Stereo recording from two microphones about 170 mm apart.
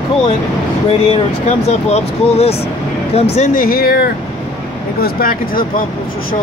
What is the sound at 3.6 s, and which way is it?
Speech, 60° left (ahead or behind).